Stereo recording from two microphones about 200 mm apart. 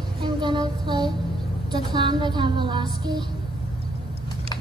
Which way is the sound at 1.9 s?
20° right (ahead or behind).